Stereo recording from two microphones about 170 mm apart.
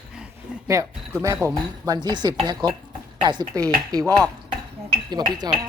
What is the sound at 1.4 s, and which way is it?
Speech, 25° right (ahead or behind).